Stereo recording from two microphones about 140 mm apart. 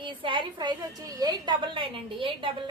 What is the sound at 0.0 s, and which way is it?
A woman's voice, 35° right (ahead or behind).